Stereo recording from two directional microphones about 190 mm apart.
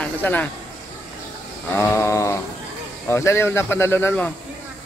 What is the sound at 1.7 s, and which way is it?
Speech, 15° left (ahead or behind).